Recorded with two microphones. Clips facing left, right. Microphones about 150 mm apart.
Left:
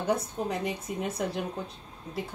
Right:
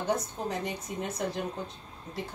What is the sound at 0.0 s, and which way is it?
Speech, 5° left (ahead or behind).